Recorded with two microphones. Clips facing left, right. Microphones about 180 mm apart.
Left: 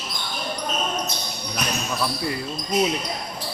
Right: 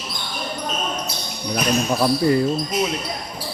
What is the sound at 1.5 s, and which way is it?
Speech, 45° right (ahead or behind).